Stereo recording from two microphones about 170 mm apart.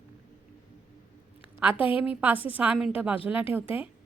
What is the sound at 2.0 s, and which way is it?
A woman's voice, 10° right (ahead or behind).